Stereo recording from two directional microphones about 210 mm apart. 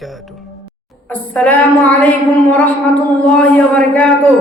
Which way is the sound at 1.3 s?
5° left (ahead or behind).